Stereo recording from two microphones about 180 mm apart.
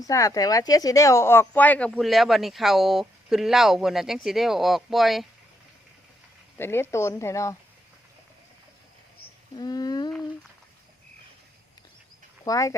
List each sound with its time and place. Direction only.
0.0 s speech: 20° left (ahead or behind); by 5.2 s centre (ahead or behind)
6.6 s speech: 15° left (ahead or behind)
9.6 s humming: 20° left (ahead or behind)
12.5 s speech: 20° left (ahead or behind)